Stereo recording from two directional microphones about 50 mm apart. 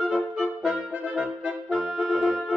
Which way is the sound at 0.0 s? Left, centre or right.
Centre.